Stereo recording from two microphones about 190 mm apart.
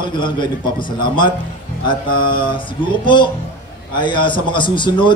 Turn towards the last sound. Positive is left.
turn(degrees=25)  # may be behind; listen again after turning